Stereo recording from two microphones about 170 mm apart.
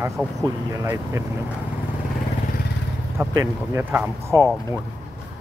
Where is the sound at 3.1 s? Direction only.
15° right (ahead or behind).